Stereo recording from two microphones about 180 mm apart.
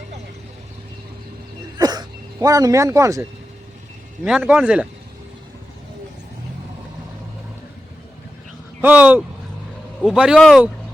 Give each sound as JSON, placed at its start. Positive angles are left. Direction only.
{"t": 1.8, "sound": "a sound", "side_deg": -20}
{"t": 4.2, "sound": "a man's voice", "side_deg": -5}
{"t": 8.8, "sound": "a man's voice", "side_deg": -10}